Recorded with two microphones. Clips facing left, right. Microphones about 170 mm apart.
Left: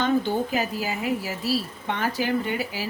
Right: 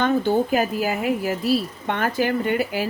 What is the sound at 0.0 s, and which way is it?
A woman's voice, 50° right (ahead or behind).